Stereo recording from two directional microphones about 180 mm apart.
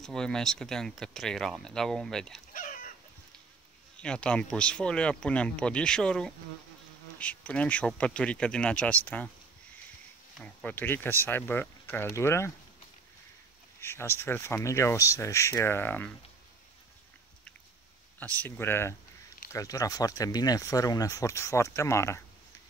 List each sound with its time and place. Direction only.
0.0 s speech: 5° left (ahead or behind)
2.5 s a sound: 50° left (ahead or behind)
4.0 s speech: 5° left (ahead or behind)
10.4 s speech: 10° left (ahead or behind)
13.7 s speech: 15° left (ahead or behind)
18.2 s speech: 10° left (ahead or behind)